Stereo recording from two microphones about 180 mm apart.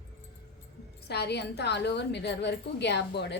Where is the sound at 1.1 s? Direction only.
65° left (ahead or behind).